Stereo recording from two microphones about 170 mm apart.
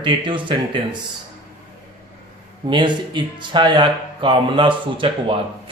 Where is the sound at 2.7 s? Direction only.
25° right (ahead or behind).